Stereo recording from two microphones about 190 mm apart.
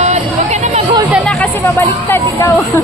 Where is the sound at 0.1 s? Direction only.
35° right (ahead or behind).